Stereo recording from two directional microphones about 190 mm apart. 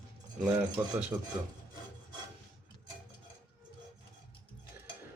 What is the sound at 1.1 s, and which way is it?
Speech, 5° right (ahead or behind).